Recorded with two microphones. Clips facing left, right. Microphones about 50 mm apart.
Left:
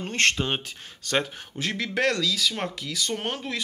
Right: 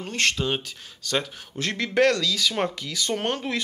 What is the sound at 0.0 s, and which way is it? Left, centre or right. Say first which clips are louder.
Speech: left 1 dB; left.